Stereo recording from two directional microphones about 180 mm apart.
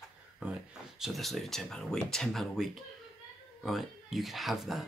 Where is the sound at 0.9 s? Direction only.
Centre (ahead or behind).